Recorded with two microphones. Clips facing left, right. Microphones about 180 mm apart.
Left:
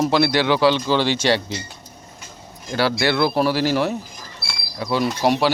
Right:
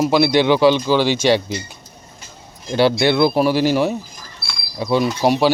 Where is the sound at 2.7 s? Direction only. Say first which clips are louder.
Right 5 dB; 25° right (ahead or behind).